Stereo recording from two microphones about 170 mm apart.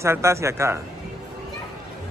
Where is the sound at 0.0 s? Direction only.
15° right (ahead or behind).